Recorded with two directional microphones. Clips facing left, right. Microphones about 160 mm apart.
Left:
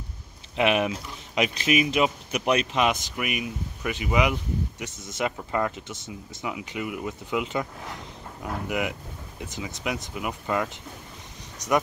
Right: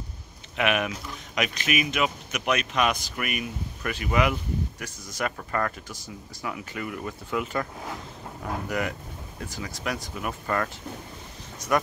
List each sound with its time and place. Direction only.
0.6 s speech: 25° left (ahead or behind)
8.6 s speech: 15° left (ahead or behind)
11.5 s a sound: 20° left (ahead or behind)